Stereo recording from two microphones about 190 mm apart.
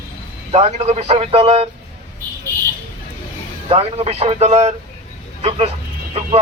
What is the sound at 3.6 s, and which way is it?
Speech, 30° right (ahead or behind).